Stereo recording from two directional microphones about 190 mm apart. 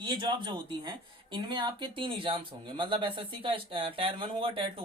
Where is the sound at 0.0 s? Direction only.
25° right (ahead or behind).